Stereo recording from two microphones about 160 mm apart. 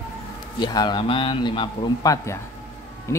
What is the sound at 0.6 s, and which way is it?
A man's voice, 25° left (ahead or behind).